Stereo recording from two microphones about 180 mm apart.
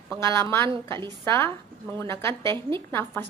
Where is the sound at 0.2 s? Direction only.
15° left (ahead or behind).